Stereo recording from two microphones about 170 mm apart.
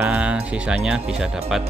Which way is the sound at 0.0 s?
5° right (ahead or behind).